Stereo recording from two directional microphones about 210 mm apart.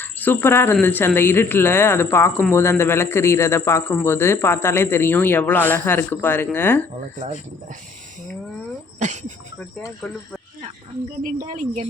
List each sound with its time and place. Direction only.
0.0 s speech: 10° left (ahead or behind)
9.0 s speech: 35° right (ahead or behind)
9.6 s speech: 5° left (ahead or behind)
11.2 s speech: 40° right (ahead or behind)